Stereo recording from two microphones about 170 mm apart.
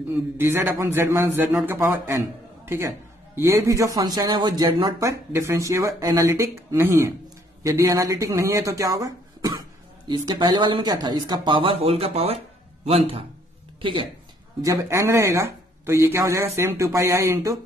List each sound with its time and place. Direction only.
0.4 s speech: 15° right (ahead or behind); by 14.0 s 30° right (ahead or behind)
14.6 s speech: 20° right (ahead or behind)